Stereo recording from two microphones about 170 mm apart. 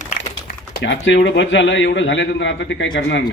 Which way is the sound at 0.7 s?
90° left.